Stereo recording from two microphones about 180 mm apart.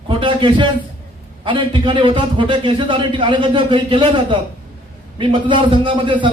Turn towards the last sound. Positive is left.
turn(degrees=-25)  # may be behind; listen again after turning